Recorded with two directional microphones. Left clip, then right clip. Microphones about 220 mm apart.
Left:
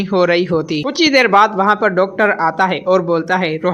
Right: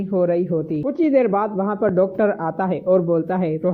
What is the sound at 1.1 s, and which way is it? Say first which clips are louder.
Speech: left 9 dB; 20° left (ahead or behind).